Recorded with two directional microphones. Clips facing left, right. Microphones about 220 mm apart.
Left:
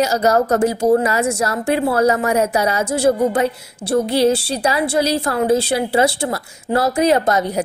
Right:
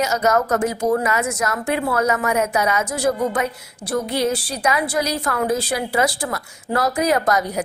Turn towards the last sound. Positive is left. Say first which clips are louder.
# left 3 dB
turn(degrees=25)  # may be behind; listen again after turning